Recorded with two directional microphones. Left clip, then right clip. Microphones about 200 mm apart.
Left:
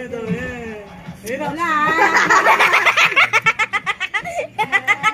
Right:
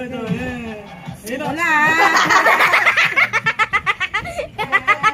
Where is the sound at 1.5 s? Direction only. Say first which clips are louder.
Right 3 dB; 60° right (ahead or behind).